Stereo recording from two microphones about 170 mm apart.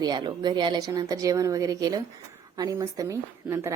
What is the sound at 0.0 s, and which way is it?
A woman's voice, 25° right (ahead or behind).